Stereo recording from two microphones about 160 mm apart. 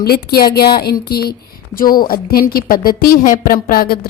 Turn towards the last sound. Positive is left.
turn(degrees=65)  # may be behind; listen again after turning